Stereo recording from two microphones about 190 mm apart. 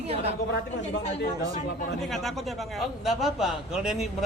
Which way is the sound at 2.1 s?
Centre (ahead or behind).